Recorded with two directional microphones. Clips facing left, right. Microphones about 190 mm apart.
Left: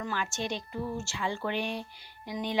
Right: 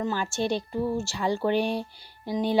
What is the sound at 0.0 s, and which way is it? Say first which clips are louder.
Speech: right 6 dB; 30° right (ahead or behind).